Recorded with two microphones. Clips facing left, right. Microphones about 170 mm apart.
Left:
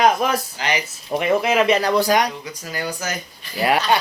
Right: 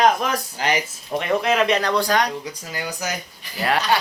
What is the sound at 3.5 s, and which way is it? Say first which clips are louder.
Speech: left 2 dB; 15° left (ahead or behind).